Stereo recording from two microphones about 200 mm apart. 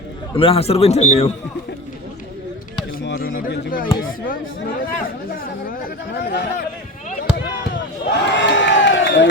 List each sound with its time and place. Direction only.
0.3 s a man's voice: 30° left (ahead or behind)
3.0 s speech: 55° left (ahead or behind)
5.0 s speech: 45° left (ahead or behind)
6.1 s a man's voice: 60° left (ahead or behind)
7.7 s crowd: 60° left (ahead or behind)